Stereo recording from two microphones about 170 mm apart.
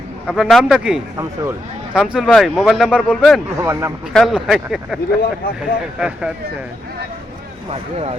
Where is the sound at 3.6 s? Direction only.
15° right (ahead or behind).